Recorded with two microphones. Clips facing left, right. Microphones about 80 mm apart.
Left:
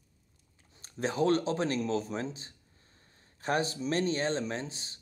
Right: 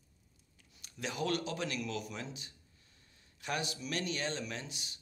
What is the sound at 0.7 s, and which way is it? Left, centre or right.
Speech, left.